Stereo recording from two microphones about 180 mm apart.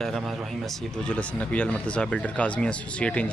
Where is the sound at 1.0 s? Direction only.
5° left (ahead or behind).